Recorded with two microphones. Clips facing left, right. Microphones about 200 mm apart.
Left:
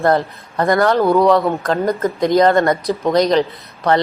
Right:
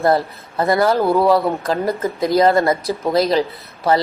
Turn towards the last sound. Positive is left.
turn(degrees=-5)  # may be behind; listen again after turning